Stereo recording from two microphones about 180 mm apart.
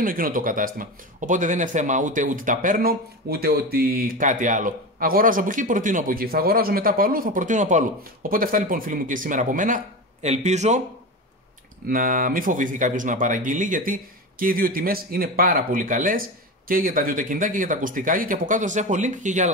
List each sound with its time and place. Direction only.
0.0 s speech: 50° right (ahead or behind)
11.9 s speech: 50° right (ahead or behind)